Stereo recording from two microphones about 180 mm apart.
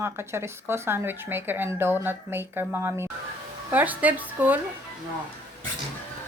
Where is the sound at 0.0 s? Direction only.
15° right (ahead or behind).